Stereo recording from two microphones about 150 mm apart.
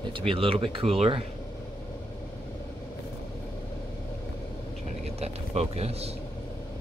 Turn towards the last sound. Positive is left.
turn(degrees=-45)  # may be behind; listen again after turning